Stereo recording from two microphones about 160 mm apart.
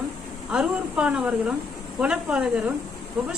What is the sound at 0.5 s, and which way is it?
A woman's voice, 5° right (ahead or behind).